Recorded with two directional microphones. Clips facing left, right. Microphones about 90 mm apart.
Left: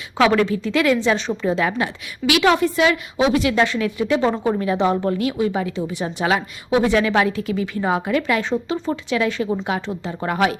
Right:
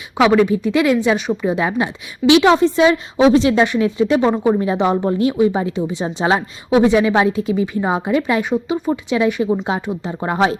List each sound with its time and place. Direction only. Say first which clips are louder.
0.2 s speech: right 4 dB; 15° right (ahead or behind)